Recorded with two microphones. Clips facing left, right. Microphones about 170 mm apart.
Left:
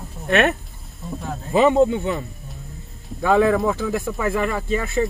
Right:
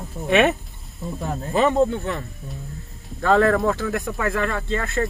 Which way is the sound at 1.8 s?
Centre (ahead or behind).